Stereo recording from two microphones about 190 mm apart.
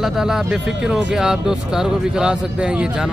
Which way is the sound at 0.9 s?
5° right (ahead or behind).